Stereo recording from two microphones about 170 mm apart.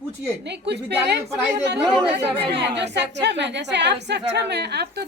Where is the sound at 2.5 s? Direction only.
90° right; by 5.1 s 75° right (ahead or behind).